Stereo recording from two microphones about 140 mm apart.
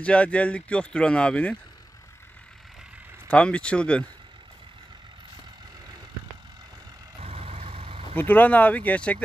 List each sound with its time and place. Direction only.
0.0 s speech: 10° left (ahead or behind)
3.3 s speech: 10° left (ahead or behind)
7.2 s vehicle: 45° right (ahead or behind)
8.2 s speech: 10° left (ahead or behind)